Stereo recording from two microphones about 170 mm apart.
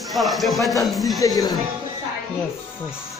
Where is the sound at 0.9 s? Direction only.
Centre (ahead or behind).